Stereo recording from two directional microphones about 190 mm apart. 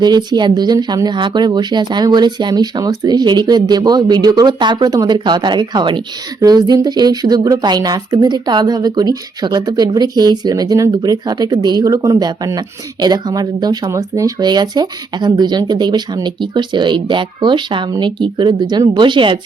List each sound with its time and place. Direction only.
0.0 s a woman's voice: 20° right (ahead or behind)